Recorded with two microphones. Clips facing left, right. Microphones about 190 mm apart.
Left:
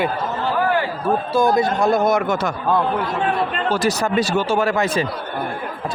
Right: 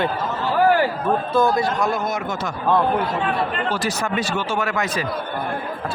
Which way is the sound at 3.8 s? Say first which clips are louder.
Left 4 dB; 35° left (ahead or behind).